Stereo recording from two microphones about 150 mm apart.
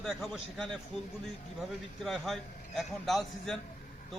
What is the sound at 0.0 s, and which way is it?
A man's voice, centre (ahead or behind).